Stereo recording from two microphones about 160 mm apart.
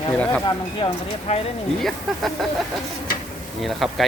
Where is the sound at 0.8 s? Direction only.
30° left (ahead or behind).